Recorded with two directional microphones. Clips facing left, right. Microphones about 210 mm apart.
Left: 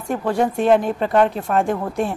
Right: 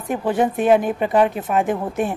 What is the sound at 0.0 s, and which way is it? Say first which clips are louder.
A woman's voice: even; 5° right (ahead or behind).